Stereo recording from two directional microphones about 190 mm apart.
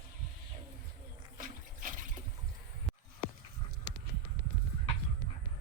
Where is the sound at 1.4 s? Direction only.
45° right (ahead or behind).